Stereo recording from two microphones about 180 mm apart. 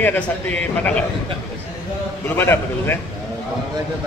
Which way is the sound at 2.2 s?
15° left (ahead or behind).